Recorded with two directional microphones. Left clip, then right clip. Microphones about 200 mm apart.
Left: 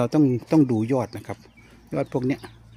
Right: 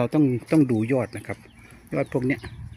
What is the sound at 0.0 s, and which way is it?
Speech, 10° left (ahead or behind).